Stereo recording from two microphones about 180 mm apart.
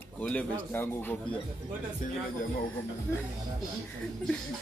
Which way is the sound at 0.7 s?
10° left (ahead or behind).